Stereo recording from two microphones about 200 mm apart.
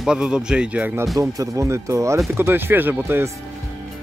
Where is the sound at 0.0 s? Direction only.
5° right (ahead or behind).